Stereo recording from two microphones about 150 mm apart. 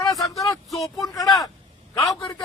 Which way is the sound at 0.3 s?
25° left (ahead or behind).